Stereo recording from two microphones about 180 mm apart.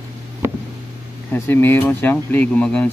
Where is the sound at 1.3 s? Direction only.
10° left (ahead or behind).